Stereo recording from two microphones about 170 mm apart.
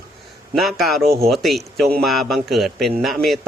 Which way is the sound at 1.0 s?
65° right (ahead or behind).